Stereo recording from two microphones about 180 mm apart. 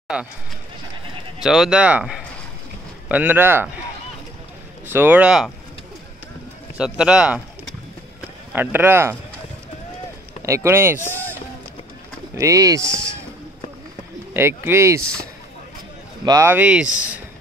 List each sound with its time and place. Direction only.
0.1 s speech: 5° right (ahead or behind)
1.4 s speech: 5° right (ahead or behind)
4.8 s speech: 10° right (ahead or behind)
6.8 s speech: 5° right (ahead or behind)
10.4 s speech: 15° right (ahead or behind)
11.1 s speech: 10° left (ahead or behind)
12.4 s speech: 20° right (ahead or behind)
14.3 s speech: 15° right (ahead or behind)
16.3 s speech: 15° right (ahead or behind)